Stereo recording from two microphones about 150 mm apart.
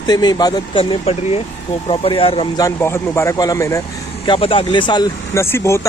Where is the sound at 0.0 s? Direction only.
25° left (ahead or behind).